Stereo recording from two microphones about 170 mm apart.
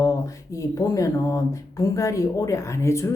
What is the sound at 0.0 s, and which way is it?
A woman's voice, 20° left (ahead or behind).